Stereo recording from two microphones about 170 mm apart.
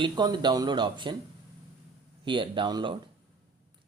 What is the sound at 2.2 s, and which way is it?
Speech, 30° right (ahead or behind).